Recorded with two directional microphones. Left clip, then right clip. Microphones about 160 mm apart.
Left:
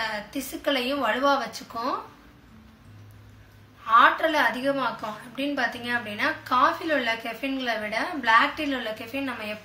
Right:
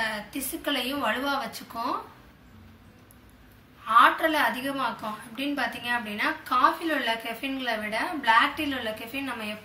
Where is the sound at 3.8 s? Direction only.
40° left (ahead or behind).